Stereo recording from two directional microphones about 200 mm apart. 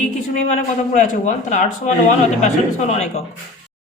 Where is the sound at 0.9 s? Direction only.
40° left (ahead or behind).